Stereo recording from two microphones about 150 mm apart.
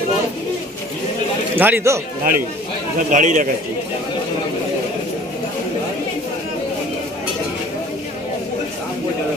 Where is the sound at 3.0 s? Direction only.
55° right (ahead or behind).